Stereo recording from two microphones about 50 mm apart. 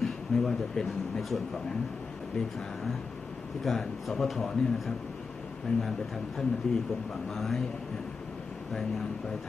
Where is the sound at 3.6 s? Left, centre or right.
Centre.